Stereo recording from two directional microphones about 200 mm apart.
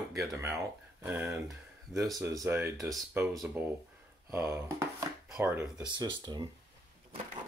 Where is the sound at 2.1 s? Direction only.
15° right (ahead or behind).